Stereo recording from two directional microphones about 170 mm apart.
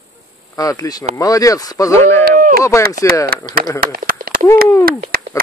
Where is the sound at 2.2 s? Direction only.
55° right (ahead or behind).